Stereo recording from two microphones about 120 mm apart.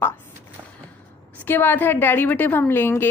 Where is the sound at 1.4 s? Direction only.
15° left (ahead or behind).